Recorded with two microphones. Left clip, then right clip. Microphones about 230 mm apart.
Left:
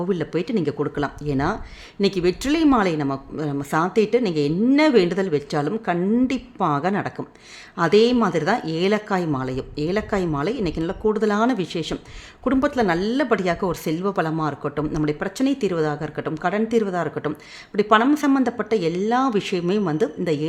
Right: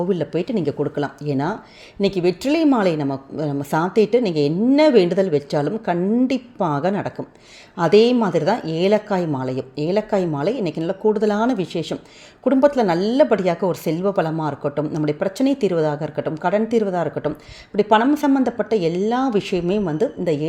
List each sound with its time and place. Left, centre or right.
0.1 s speech: centre